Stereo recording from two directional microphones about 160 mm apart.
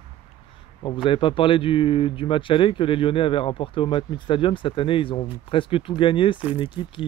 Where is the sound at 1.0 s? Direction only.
30° left (ahead or behind).